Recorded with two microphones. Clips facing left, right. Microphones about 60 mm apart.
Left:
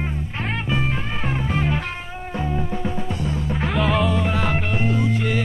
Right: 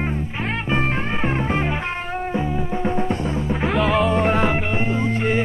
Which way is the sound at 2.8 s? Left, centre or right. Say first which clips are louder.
Right 4 dB; right.